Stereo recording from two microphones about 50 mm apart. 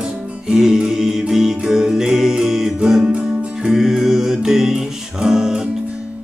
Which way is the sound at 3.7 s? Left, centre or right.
Centre.